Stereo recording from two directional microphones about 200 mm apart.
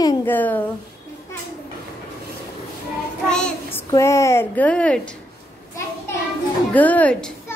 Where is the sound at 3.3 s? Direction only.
5° left (ahead or behind).